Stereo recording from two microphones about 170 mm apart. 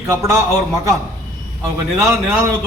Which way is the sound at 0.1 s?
15° right (ahead or behind).